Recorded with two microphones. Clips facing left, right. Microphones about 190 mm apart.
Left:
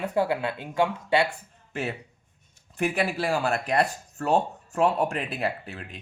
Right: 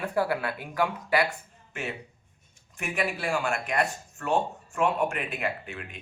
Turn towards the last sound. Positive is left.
turn(degrees=35)  # may be behind; listen again after turning